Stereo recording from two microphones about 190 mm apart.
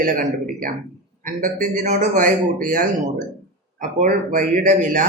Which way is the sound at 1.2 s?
45° right (ahead or behind).